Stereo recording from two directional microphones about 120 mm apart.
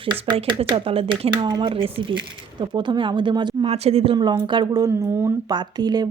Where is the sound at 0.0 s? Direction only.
45° right (ahead or behind).